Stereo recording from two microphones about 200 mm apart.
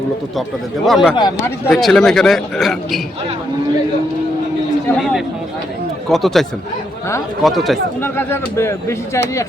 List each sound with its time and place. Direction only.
0.9 s a man's voice: centre (ahead or behind)
1.1 s speech: 20° left (ahead or behind)
1.6 s a man's voice: centre (ahead or behind)
6.1 s a man's voice: centre (ahead or behind)
7.4 s a man's voice: centre (ahead or behind)
8.0 s speech: 10° left (ahead or behind)